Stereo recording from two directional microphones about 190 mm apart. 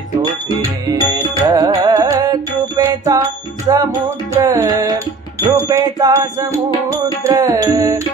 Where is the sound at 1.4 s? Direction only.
20° right (ahead or behind).